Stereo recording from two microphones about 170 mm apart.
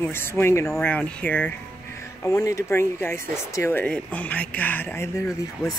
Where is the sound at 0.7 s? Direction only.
5° left (ahead or behind).